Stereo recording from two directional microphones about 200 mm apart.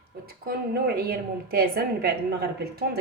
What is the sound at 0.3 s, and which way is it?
A woman's voice, 50° right (ahead or behind).